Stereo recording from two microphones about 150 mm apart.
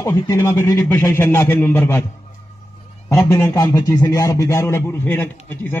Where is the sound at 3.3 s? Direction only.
20° left (ahead or behind).